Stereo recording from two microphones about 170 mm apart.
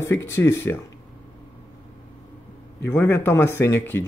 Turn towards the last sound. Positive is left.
turn(degrees=10)  # may be behind; listen again after turning